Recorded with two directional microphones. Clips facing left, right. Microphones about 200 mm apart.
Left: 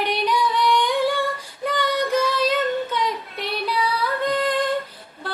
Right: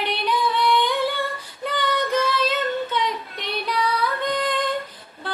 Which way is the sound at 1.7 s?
10° left (ahead or behind).